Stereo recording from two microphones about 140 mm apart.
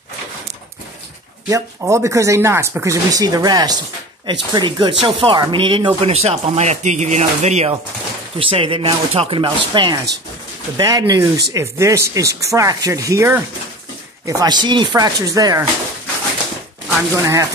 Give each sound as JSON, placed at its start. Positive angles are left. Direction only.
{"t": 1.5, "sound": "speech", "side_deg": -20}
{"t": 8.4, "sound": "speech", "side_deg": -40}
{"t": 17.1, "sound": "speech", "side_deg": -20}